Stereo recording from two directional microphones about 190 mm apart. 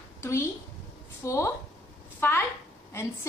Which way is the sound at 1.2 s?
15° left (ahead or behind).